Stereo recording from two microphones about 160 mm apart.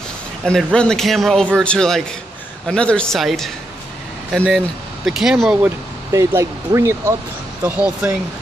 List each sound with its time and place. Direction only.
0.4 s speech: 5° left (ahead or behind)
6.1 s speech: 15° right (ahead or behind)